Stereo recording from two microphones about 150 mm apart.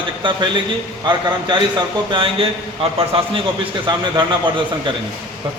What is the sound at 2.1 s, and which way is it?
A man's voice, 35° right (ahead or behind).